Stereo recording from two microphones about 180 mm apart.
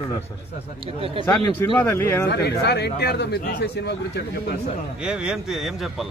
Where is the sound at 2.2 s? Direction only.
70° left (ahead or behind).